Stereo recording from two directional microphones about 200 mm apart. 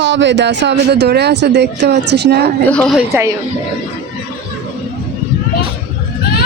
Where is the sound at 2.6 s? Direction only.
5° left (ahead or behind).